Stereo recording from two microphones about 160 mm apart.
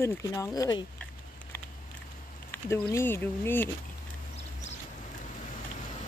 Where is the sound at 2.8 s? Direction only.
15° left (ahead or behind).